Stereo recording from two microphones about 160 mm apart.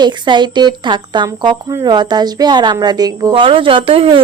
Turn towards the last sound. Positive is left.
turn(degrees=-35)  # may be behind; listen again after turning